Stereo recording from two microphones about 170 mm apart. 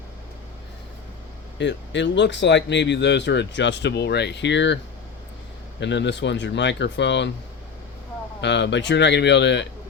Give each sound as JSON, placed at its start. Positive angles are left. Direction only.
{"t": 1.5, "sound": "speech", "side_deg": 90}
{"t": 5.8, "sound": "speech", "side_deg": 90}
{"t": 8.4, "sound": "speech", "side_deg": 90}